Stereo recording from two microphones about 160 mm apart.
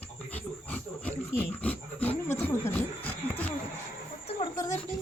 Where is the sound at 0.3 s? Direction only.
10° left (ahead or behind).